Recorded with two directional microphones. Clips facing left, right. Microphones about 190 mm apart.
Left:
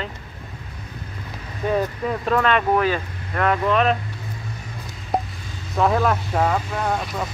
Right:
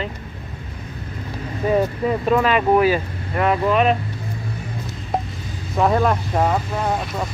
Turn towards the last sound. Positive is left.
turn(degrees=-5)  # may be behind; listen again after turning